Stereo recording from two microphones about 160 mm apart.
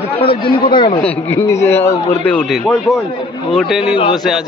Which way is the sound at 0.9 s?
10° left (ahead or behind).